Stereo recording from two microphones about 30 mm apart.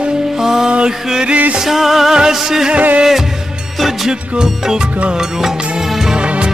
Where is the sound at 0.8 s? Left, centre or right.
Right.